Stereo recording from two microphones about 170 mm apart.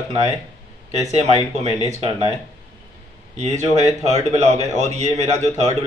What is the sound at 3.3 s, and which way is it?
Speech, 40° right (ahead or behind).